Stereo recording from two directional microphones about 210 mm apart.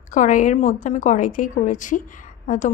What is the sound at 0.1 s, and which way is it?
A woman's voice, 40° left (ahead or behind).